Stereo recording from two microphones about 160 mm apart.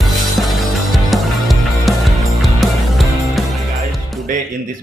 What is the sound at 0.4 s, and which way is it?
Music, centre (ahead or behind).